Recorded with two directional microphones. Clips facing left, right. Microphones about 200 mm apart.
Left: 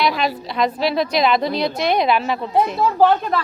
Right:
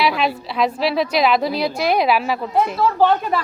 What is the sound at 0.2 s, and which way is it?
A woman's voice, 5° right (ahead or behind).